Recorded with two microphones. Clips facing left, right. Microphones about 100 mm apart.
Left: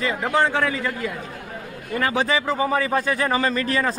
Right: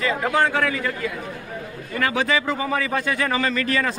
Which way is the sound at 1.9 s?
30° left (ahead or behind).